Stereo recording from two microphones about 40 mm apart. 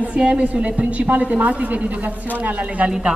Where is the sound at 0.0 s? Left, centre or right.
Right.